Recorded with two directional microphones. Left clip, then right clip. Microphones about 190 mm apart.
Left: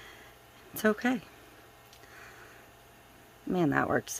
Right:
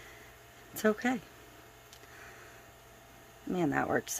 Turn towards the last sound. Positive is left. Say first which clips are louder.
# left 3 dB
turn(degrees=15)  # may be behind; listen again after turning